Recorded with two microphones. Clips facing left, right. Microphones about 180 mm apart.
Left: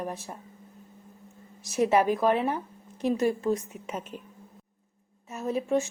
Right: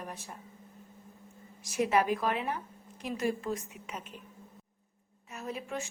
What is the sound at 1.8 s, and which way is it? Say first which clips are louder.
Speech: left 5 dB; 35° left (ahead or behind).